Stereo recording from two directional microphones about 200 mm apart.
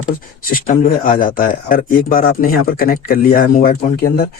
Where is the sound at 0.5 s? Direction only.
40° left (ahead or behind).